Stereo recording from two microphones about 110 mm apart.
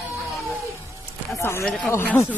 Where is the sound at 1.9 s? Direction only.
20° left (ahead or behind).